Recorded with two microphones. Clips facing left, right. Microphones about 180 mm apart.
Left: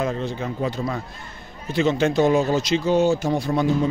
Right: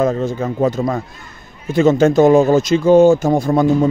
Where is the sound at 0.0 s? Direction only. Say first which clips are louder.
Right 8 dB; 45° right (ahead or behind).